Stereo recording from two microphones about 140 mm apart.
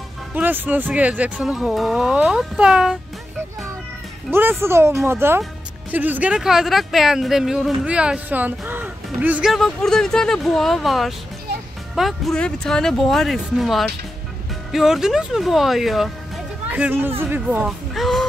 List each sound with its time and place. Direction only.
0.3 s speech: 10° right (ahead or behind)
4.3 s speech: 15° right (ahead or behind)
16.7 s speech: 10° right (ahead or behind)